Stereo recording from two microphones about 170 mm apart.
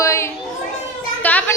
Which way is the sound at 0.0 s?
15° left (ahead or behind).